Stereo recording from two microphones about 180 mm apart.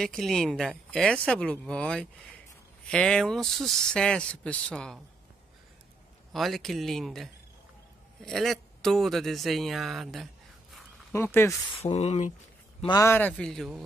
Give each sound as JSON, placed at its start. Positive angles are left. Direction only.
{"t": 0.0, "sound": "speech", "side_deg": 0}
{"t": 6.3, "sound": "speech", "side_deg": 0}
{"t": 11.1, "sound": "a man's voice", "side_deg": 15}
{"t": 11.8, "sound": "speech", "side_deg": 35}
{"t": 12.8, "sound": "a man's voice", "side_deg": 20}